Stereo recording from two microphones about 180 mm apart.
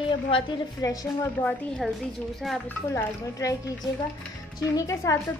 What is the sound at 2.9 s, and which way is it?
Speech, 20° left (ahead or behind).